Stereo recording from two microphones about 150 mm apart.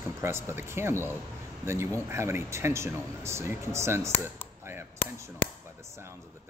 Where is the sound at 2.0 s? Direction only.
15° right (ahead or behind).